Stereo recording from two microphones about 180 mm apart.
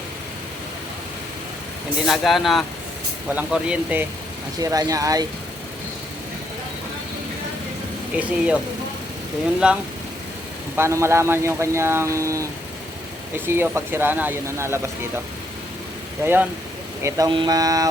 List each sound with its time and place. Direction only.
2.0 s speech: centre (ahead or behind)
4.6 s speech: 20° right (ahead or behind)
8.1 s speech: 5° right (ahead or behind)
9.6 s speech: 5° right (ahead or behind)
16.2 s speech: 10° right (ahead or behind)